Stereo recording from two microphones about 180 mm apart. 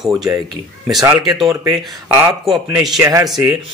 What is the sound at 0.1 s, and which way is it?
Speech, 20° right (ahead or behind).